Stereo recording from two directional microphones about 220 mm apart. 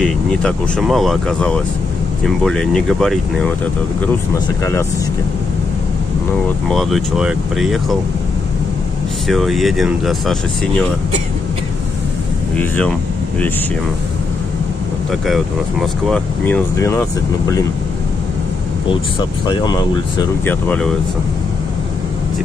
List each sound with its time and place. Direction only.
0.0 s speech: 5° left (ahead or behind)
6.7 s speech: centre (ahead or behind)
9.3 s speech: centre (ahead or behind)
12.5 s speech: 5° left (ahead or behind)
15.2 s speech: centre (ahead or behind)
18.9 s speech: 20° left (ahead or behind)
20.4 s speech: 5° left (ahead or behind)